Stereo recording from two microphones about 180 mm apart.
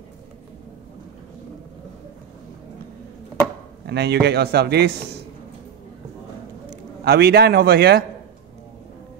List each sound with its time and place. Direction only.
3.8 s a man's voice: 65° right (ahead or behind)
7.1 s a man's voice: 60° right (ahead or behind)